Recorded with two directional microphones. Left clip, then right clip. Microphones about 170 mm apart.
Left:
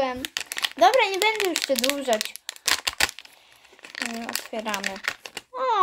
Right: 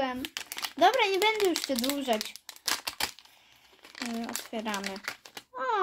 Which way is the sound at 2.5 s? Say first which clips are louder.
Left 8 dB; 35° left (ahead or behind).